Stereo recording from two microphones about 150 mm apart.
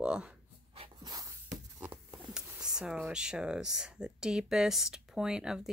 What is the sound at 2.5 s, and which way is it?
Speech, 5° right (ahead or behind).